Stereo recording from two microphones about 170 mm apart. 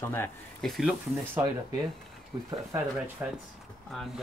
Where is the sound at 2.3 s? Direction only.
20° right (ahead or behind).